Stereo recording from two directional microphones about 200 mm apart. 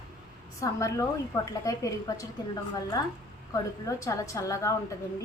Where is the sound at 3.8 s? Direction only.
15° left (ahead or behind).